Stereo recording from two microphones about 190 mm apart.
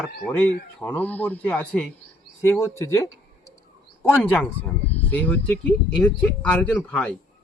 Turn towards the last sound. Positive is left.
turn(degrees=5)  # may be behind; listen again after turning